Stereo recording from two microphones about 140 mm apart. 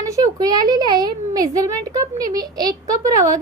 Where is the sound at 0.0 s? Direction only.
25° right (ahead or behind).